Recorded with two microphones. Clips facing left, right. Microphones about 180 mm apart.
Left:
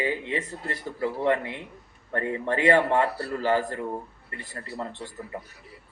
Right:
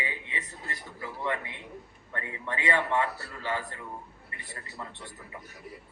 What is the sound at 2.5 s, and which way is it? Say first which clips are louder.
Speech: left 7 dB; 70° left (ahead or behind).